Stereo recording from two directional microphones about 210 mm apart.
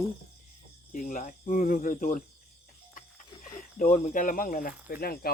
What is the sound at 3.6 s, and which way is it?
Speech, 40° left (ahead or behind).